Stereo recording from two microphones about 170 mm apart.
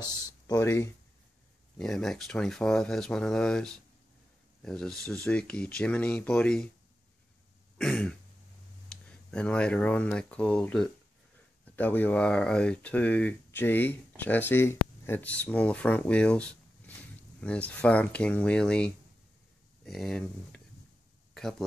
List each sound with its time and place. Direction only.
0.0 s speech: 25° left (ahead or behind)
1.8 s speech: 5° left (ahead or behind)
7.7 s throat clearing: 5° left (ahead or behind)
8.9 s a sound: 5° left (ahead or behind)
9.3 s speech: 5° left (ahead or behind)